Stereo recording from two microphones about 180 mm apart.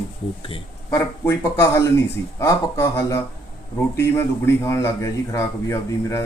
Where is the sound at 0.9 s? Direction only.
15° left (ahead or behind).